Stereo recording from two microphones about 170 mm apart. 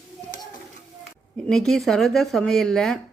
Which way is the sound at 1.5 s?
Centre (ahead or behind).